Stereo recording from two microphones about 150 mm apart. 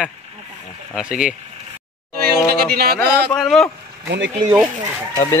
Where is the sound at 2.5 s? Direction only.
90° right.